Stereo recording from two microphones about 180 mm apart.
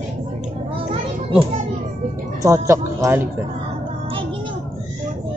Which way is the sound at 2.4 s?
15° right (ahead or behind).